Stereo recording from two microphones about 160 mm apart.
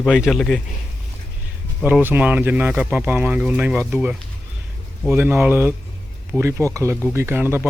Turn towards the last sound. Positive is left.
turn(degrees=-15)  # may be behind; listen again after turning